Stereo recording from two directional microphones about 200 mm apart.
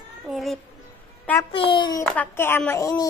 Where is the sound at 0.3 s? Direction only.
Centre (ahead or behind).